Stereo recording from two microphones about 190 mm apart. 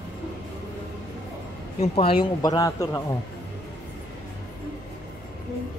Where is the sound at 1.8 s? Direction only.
30° left (ahead or behind).